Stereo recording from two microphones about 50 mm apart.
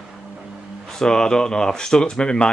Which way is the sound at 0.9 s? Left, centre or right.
Centre.